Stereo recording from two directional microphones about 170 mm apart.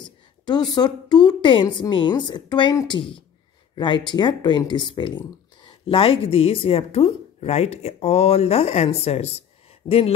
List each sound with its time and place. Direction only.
0.7 s a woman's voice: 25° left (ahead or behind)